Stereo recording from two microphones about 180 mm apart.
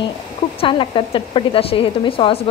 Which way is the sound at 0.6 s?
30° left (ahead or behind).